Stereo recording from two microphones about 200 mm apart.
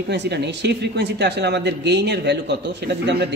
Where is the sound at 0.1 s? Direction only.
60° right (ahead or behind).